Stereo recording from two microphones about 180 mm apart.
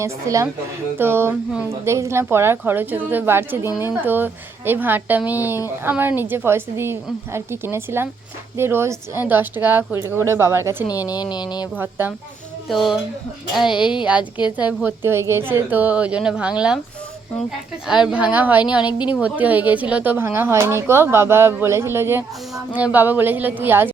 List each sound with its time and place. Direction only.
0.0 s speech: 20° right (ahead or behind)
10.8 s speech: 20° left (ahead or behind)
11.8 s speech: 10° right (ahead or behind)
12.6 s speech: centre (ahead or behind)
13.7 s speech: 25° left (ahead or behind)
14.5 s speech: 5° right (ahead or behind)
17.8 s speech: 5° right (ahead or behind)
18.8 s speech: 25° left (ahead or behind)
19.2 s speech: 10° right (ahead or behind)